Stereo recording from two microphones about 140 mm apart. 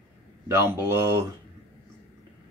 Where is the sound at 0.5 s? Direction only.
15° right (ahead or behind).